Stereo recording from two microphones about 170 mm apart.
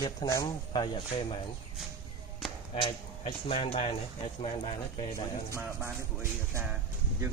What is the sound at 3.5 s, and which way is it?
Speech, 35° left (ahead or behind).